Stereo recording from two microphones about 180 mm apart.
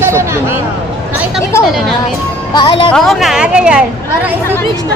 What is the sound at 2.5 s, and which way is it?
Speech, 25° left (ahead or behind).